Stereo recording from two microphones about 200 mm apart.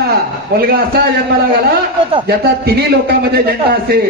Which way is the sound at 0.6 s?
50° right (ahead or behind).